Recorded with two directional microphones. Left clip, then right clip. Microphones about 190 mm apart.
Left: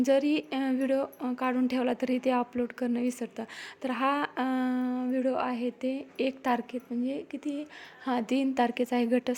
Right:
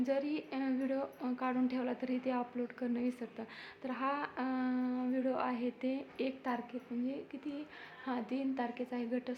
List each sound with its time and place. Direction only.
0.0 s speech: 40° left (ahead or behind)
8.0 s a woman's voice: 45° left (ahead or behind)